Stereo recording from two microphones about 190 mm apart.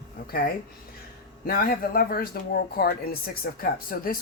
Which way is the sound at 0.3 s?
50° left (ahead or behind).